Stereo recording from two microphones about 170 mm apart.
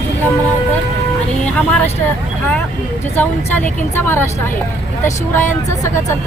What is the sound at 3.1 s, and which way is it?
Speech, 10° left (ahead or behind).